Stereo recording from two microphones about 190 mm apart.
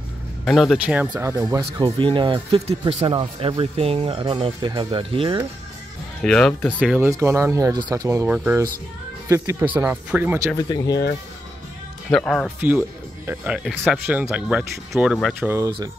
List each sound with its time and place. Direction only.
0.5 s speech: centre (ahead or behind)
1.3 s speech: 20° right (ahead or behind)
6.2 s speech: 5° left (ahead or behind)
7.1 s speech: 15° right (ahead or behind)
10.5 s speech: 20° left (ahead or behind)
12.1 s speech: 5° left (ahead or behind)
12.5 s speech: 10° right (ahead or behind)
15.4 s speech: 15° right (ahead or behind)